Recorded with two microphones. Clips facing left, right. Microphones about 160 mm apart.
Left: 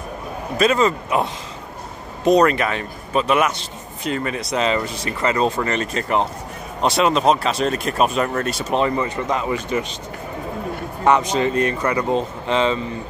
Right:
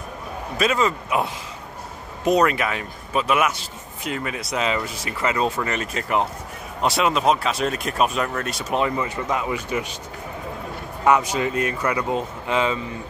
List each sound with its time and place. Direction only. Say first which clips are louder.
0.6 s speech: left 4 dB; 5° right (ahead or behind)
11.1 s speech: left 2 dB; 10° right (ahead or behind)